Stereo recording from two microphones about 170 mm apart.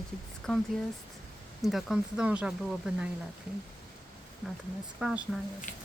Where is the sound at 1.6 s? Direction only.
Centre (ahead or behind).